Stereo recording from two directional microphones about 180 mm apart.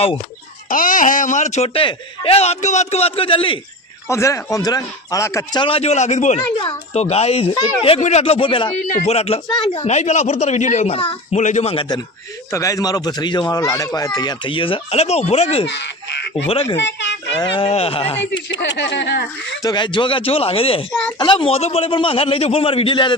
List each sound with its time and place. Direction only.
0.7 s speech: 50° left (ahead or behind); by 3.6 s 30° left (ahead or behind)
4.1 s speech: 15° left (ahead or behind)
5.6 s speech: 35° left (ahead or behind)
6.6 s speech: 25° left (ahead or behind)
12.5 s speech: 15° left (ahead or behind); by 15.6 s 35° left (ahead or behind)
15.6 s speech: 75° left (ahead or behind)
16.8 s speech: 85° left
17.4 s speech: 30° left (ahead or behind)
18.6 s speech: 75° left (ahead or behind)
19.6 s speech: 25° left (ahead or behind)